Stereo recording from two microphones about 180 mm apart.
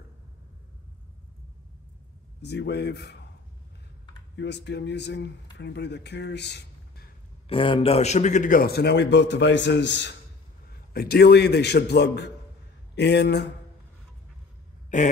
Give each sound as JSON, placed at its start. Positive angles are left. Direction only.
{"t": 2.4, "sound": "a man's voice", "side_deg": 65}
{"t": 4.4, "sound": "speech", "side_deg": 75}
{"t": 7.4, "sound": "a man's voice", "side_deg": 30}
{"t": 10.9, "sound": "a man's voice", "side_deg": 60}
{"t": 14.9, "sound": "a sound", "side_deg": 45}